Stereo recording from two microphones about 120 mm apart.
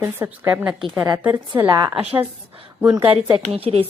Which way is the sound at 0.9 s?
30° right (ahead or behind).